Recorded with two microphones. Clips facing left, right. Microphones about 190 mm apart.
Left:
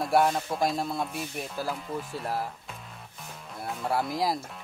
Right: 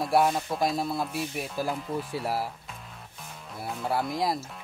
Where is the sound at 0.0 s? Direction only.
Centre (ahead or behind).